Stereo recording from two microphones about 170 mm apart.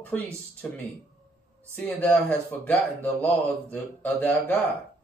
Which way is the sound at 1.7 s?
10° left (ahead or behind).